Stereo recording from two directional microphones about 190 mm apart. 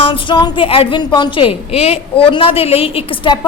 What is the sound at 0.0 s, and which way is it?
A woman's voice, 25° left (ahead or behind).